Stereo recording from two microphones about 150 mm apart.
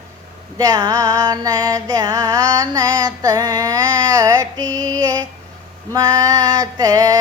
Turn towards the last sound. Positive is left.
turn(degrees=-25)  # may be behind; listen again after turning